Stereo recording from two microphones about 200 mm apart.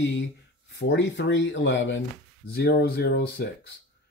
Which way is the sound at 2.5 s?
50° left (ahead or behind).